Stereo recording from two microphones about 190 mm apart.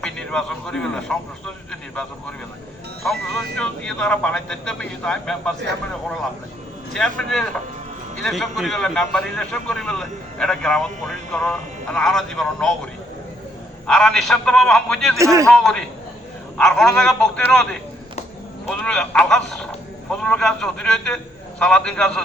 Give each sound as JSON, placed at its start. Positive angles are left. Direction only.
{"t": 0.0, "sound": "speech", "side_deg": 5}
{"t": 3.0, "sound": "speech", "side_deg": 5}
{"t": 6.9, "sound": "speech", "side_deg": 5}
{"t": 13.8, "sound": "speech", "side_deg": 5}
{"t": 15.2, "sound": "a man's voice", "side_deg": -15}
{"t": 15.4, "sound": "speech", "side_deg": 5}